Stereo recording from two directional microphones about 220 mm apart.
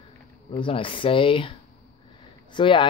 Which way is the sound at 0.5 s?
25° left (ahead or behind).